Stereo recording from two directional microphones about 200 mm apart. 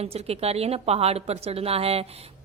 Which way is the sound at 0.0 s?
30° right (ahead or behind).